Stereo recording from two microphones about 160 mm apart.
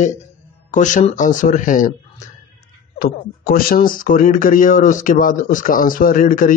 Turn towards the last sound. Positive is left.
turn(degrees=60)  # may be behind; listen again after turning